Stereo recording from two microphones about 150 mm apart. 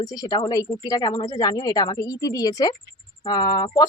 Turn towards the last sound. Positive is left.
turn(degrees=25)  # may be behind; listen again after turning